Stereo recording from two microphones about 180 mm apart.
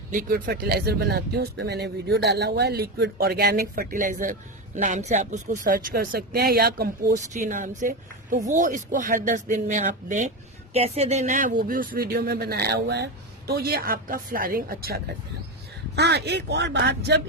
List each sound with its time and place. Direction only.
0.1 s a woman's voice: 55° right (ahead or behind); by 17.2 s 70° right (ahead or behind)